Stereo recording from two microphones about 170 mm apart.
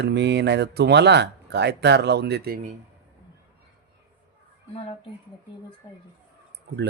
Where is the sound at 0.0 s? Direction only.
90° right; by 2.6 s 70° right (ahead or behind).